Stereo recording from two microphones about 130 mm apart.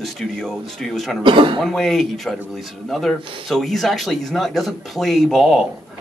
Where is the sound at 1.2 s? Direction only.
40° right (ahead or behind).